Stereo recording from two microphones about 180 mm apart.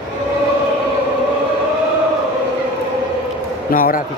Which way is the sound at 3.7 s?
50° left (ahead or behind).